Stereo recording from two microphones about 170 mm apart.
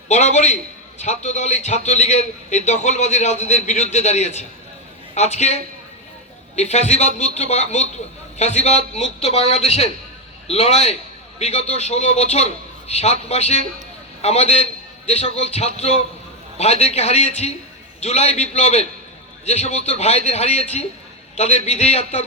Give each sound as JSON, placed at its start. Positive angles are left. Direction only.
{"t": 0.1, "sound": "a man's voice", "side_deg": 40}